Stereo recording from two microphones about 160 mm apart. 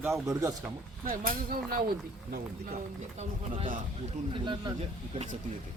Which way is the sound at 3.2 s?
35° right (ahead or behind).